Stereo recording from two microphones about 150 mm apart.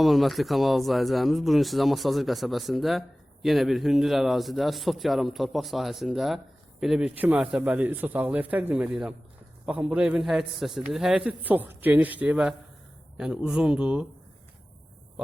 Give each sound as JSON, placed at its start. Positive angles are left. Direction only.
{"t": 0.0, "sound": "a man's voice", "side_deg": 0}